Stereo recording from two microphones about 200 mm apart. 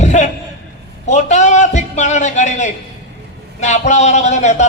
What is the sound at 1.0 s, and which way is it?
A man's voice, 35° left (ahead or behind).